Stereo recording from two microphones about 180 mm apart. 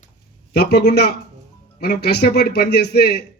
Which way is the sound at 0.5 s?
65° left (ahead or behind).